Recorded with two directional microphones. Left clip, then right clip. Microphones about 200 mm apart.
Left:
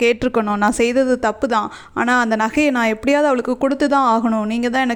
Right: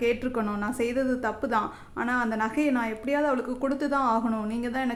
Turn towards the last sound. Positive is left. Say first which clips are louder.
# left 11 dB
turn(degrees=45)  # may be behind; listen again after turning